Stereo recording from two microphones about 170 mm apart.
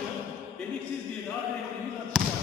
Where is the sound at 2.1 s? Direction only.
Centre (ahead or behind).